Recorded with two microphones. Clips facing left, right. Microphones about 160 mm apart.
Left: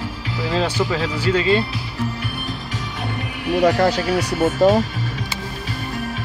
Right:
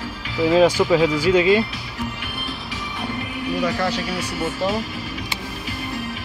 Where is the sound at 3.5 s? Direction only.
70° left (ahead or behind).